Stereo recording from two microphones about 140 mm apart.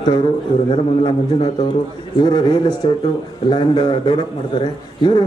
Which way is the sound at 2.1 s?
30° left (ahead or behind).